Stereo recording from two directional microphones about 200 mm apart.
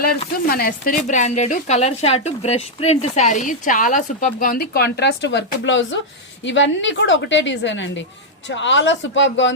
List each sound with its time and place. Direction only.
0.4 s a woman's voice: 50° left (ahead or behind); by 9.6 s 65° left (ahead or behind)